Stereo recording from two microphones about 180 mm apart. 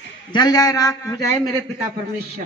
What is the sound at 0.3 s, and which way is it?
Speech, 20° left (ahead or behind).